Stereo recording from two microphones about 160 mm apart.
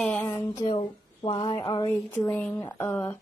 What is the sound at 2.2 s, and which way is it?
Speech, 10° left (ahead or behind).